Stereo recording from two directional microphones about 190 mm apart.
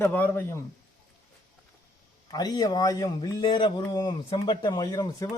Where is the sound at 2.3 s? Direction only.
20° left (ahead or behind).